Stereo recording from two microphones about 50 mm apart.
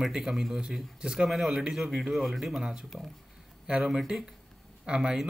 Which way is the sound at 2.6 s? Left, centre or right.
Centre.